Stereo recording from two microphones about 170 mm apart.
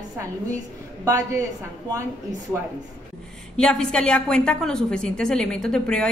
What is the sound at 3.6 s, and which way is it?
A woman's voice, 5° left (ahead or behind).